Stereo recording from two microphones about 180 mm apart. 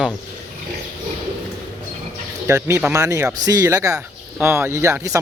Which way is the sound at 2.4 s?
15° right (ahead or behind).